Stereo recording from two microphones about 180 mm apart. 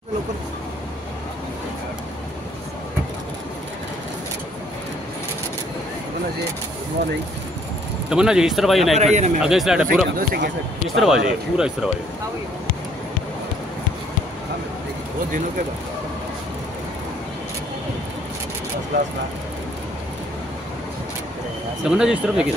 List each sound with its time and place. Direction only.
8.1 s speech: 5° right (ahead or behind)
8.9 s a man's voice: 40° right (ahead or behind)
9.4 s speech: 5° right (ahead or behind)
10.1 s speech: 60° right (ahead or behind)
11.0 s speech: 5° right (ahead or behind)
21.8 s speech: 5° right (ahead or behind)